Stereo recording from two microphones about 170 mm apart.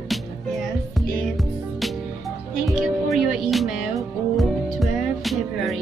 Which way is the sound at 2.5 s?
Centre (ahead or behind).